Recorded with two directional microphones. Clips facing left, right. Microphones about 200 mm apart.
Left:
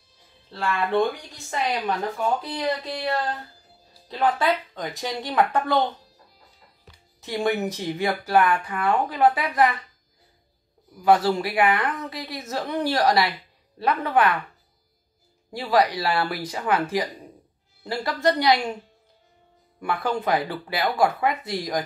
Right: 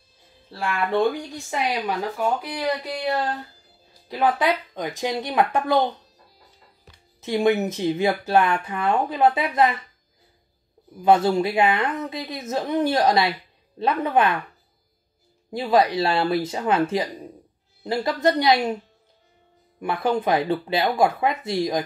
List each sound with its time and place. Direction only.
0.5 s a woman's voice: 15° right (ahead or behind)
7.2 s speech: 20° right (ahead or behind)
11.0 s speech: 20° right (ahead or behind)
15.5 s speech: 20° right (ahead or behind)
19.8 s speech: 20° right (ahead or behind)